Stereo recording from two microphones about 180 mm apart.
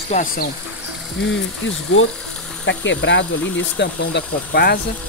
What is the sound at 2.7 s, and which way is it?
Speech, 85° left.